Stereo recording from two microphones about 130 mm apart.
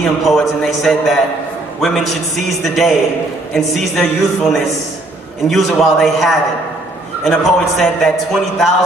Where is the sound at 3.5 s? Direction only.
Centre (ahead or behind).